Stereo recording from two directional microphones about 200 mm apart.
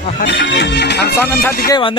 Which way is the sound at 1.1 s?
10° left (ahead or behind).